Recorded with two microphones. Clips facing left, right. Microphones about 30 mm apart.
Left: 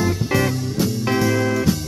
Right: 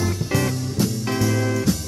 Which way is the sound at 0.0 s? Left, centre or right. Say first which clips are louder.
Left 3 dB; centre.